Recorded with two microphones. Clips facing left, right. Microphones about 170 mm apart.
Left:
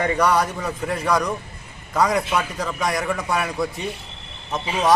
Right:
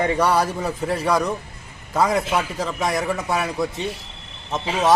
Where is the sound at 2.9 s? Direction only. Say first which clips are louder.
Even; centre (ahead or behind).